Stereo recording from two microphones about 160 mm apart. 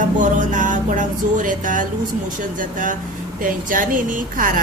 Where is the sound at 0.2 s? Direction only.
50° right (ahead or behind).